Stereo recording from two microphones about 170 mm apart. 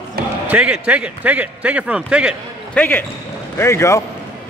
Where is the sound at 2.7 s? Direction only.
10° left (ahead or behind).